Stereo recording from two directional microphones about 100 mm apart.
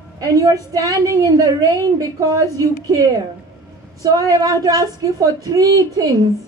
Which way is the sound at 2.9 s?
35° right (ahead or behind).